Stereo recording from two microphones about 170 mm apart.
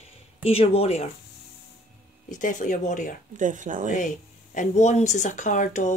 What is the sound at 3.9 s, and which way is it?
Speech, 50° left (ahead or behind).